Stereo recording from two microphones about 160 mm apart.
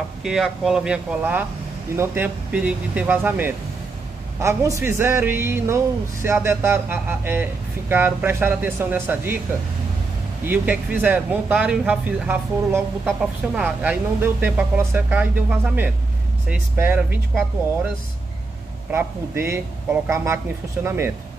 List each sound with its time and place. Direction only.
0.2 s speech: 5° right (ahead or behind)
10.4 s speech: 10° right (ahead or behind)
18.9 s speech: 15° right (ahead or behind)